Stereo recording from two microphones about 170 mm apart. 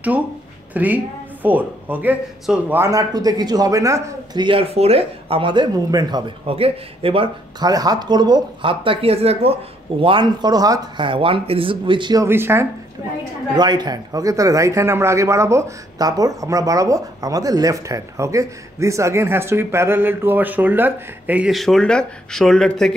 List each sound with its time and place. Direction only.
0.7 s speech: 10° right (ahead or behind)
13.6 s a man's voice: 25° right (ahead or behind); by 22.9 s 5° left (ahead or behind)